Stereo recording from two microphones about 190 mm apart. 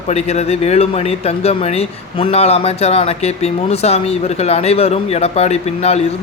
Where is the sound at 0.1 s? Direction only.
35° left (ahead or behind).